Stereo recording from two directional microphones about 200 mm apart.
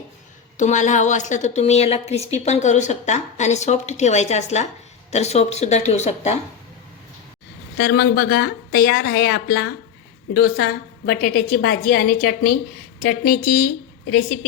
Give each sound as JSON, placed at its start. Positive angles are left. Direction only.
{"t": 0.5, "sound": "a woman's voice", "side_deg": 35}
{"t": 7.8, "sound": "a woman's voice", "side_deg": 50}